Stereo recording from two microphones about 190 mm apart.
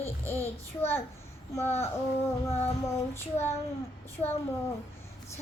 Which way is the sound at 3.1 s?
10° left (ahead or behind).